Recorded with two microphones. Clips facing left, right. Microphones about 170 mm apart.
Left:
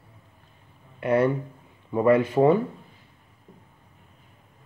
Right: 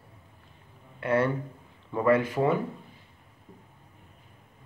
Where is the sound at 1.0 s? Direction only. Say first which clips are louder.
Left 4 dB; 20° left (ahead or behind).